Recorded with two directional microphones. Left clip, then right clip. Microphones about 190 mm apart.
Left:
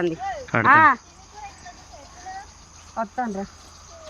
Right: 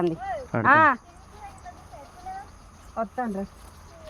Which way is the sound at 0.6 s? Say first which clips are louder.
Left 3 dB; 30° right (ahead or behind).